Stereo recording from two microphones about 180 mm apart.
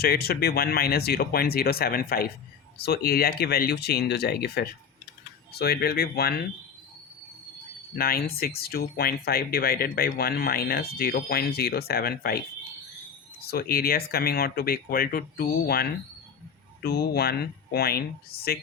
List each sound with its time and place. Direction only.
0.0 s speech: 60° left (ahead or behind)
7.9 s speech: 55° left (ahead or behind)
13.4 s speech: 60° left (ahead or behind)